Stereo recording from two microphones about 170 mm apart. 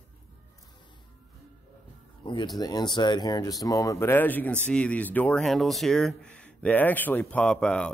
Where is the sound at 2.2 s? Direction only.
25° left (ahead or behind).